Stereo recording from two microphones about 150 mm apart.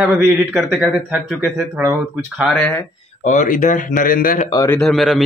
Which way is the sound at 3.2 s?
55° left (ahead or behind).